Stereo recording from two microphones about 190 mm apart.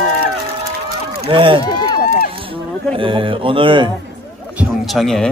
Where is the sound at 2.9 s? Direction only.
25° right (ahead or behind).